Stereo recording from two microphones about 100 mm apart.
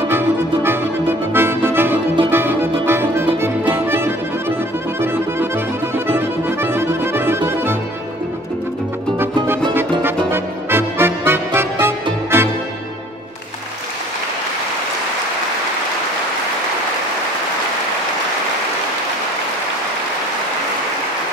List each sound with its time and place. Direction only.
0.1 s music: 25° right (ahead or behind)
5.0 s accordion: 25° right (ahead or behind)
10.3 s music: 25° right (ahead or behind)